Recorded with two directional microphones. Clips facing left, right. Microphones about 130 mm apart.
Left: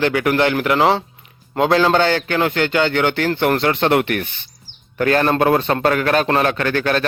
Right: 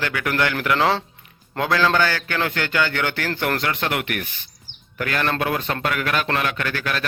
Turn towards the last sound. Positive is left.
turn(degrees=35)  # may be behind; listen again after turning